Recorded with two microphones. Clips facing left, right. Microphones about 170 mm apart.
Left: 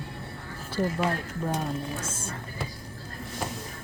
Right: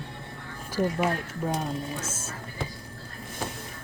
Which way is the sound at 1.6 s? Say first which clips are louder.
Even; 5° right (ahead or behind).